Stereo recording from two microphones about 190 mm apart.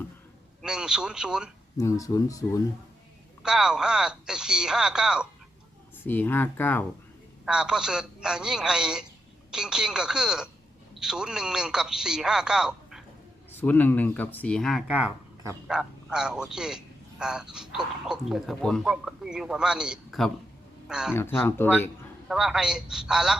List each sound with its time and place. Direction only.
0.6 s a man's voice: 5° right (ahead or behind)
1.8 s speech: 15° left (ahead or behind)
3.4 s a man's voice: 5° right (ahead or behind)
6.0 s speech: 10° left (ahead or behind)
7.4 s a man's voice: 5° right (ahead or behind)
13.5 s a man's voice: 10° left (ahead or behind)
21.2 s speech: 10° left (ahead or behind)
22.3 s a man's voice: centre (ahead or behind)